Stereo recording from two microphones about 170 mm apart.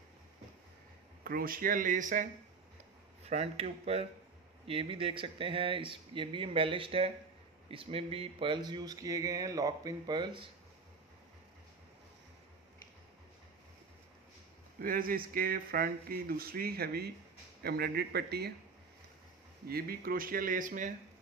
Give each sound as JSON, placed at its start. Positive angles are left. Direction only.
{"t": 1.2, "sound": "speech", "side_deg": -60}
{"t": 3.3, "sound": "speech", "side_deg": -40}
{"t": 14.8, "sound": "speech", "side_deg": -55}
{"t": 19.7, "sound": "speech", "side_deg": -60}